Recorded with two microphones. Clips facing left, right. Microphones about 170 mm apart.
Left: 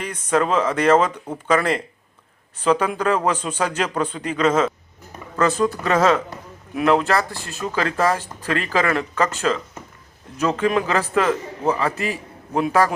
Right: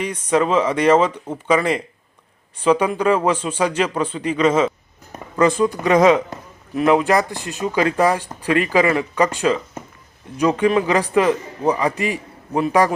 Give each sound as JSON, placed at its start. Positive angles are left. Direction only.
{"t": 0.0, "sound": "speech", "side_deg": -10}